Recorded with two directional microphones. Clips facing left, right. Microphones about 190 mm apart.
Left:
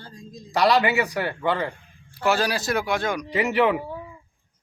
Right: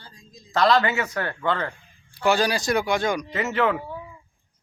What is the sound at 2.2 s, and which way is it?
Speech, centre (ahead or behind).